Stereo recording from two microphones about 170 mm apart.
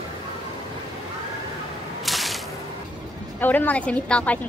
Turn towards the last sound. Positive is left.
turn(degrees=5)  # may be behind; listen again after turning